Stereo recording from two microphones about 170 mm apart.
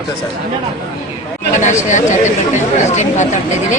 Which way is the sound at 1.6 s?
45° left (ahead or behind).